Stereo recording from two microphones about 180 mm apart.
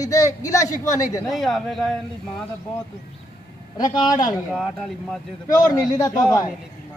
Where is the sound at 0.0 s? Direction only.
20° left (ahead or behind).